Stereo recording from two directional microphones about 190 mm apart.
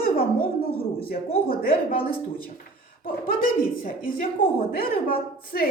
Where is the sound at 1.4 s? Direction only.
50° left (ahead or behind).